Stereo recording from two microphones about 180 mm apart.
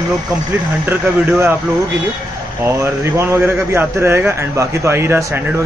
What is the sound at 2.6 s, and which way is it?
Speech, 15° right (ahead or behind).